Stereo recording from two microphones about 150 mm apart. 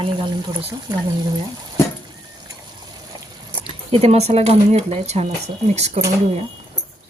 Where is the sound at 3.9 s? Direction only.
45° right (ahead or behind).